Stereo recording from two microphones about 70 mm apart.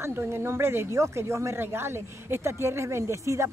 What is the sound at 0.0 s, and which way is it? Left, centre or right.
Speech, right.